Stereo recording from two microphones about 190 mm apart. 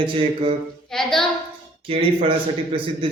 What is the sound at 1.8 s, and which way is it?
Speech, 30° right (ahead or behind).